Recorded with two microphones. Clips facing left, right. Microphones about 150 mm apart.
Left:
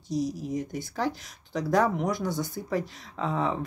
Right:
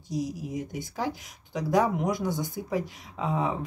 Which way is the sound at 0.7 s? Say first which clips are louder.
Left 2 dB; 15° right (ahead or behind).